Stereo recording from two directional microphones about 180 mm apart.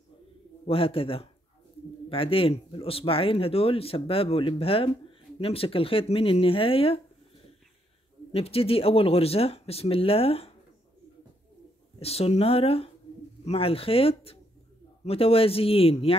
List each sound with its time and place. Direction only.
0.7 s speech: 30° left (ahead or behind)
8.3 s speech: 35° left (ahead or behind)
12.0 s speech: 35° left (ahead or behind)